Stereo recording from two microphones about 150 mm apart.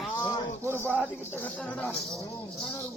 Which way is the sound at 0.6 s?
15° right (ahead or behind).